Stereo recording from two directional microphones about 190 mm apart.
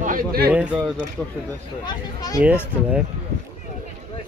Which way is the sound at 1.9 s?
20° left (ahead or behind).